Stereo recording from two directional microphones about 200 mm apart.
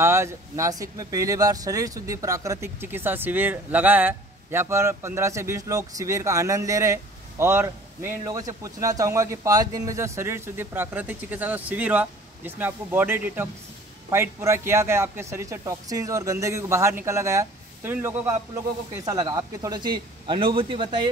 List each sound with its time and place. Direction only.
0.0 s speech: 15° right (ahead or behind)